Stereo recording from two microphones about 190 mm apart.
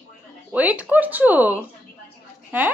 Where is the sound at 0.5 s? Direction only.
10° right (ahead or behind).